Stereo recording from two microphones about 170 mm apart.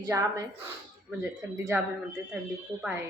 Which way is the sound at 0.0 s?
20° right (ahead or behind).